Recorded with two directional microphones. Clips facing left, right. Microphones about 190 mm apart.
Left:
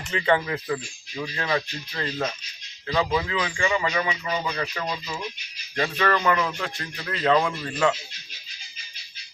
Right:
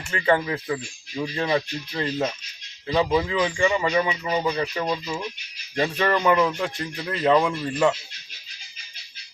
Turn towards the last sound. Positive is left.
turn(degrees=-15)  # may be behind; listen again after turning